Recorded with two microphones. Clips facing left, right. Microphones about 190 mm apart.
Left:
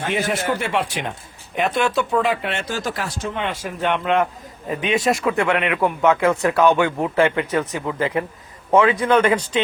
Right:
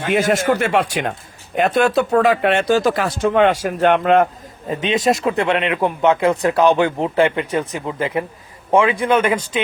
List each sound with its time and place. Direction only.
0.1 s speech: 85° right
0.3 s speech: 45° right (ahead or behind)
0.9 s speech: 80° right
1.5 s speech: 40° right (ahead or behind)
2.3 s speech: 60° right (ahead or behind)
3.9 s speech: 40° right (ahead or behind)
4.7 s a man's voice: 20° right (ahead or behind)
9.3 s speech: 25° right (ahead or behind)